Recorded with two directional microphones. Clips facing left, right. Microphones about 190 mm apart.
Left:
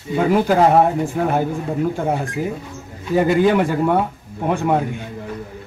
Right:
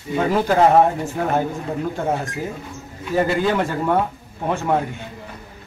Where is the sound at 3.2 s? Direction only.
15° left (ahead or behind).